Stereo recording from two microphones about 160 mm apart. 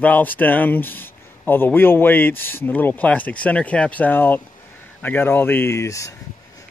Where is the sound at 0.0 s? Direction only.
10° left (ahead or behind).